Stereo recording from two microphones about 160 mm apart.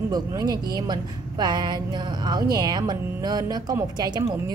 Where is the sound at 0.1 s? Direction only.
25° right (ahead or behind).